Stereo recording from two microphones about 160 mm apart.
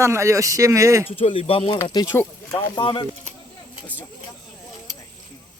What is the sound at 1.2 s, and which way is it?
Speech, 35° left (ahead or behind).